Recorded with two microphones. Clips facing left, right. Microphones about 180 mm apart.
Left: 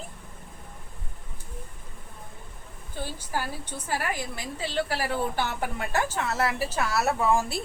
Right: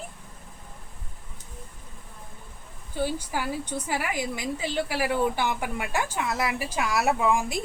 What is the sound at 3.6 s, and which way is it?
A woman's voice, 15° right (ahead or behind).